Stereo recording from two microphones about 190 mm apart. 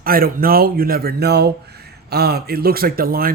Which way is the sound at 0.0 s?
50° right (ahead or behind).